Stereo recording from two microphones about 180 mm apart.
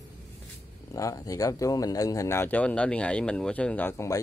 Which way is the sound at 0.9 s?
20° left (ahead or behind).